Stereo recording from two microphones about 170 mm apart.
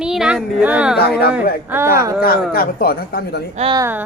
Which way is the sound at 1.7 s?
15° right (ahead or behind).